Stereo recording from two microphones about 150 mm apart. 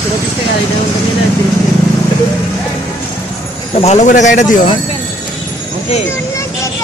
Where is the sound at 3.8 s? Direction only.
50° left (ahead or behind).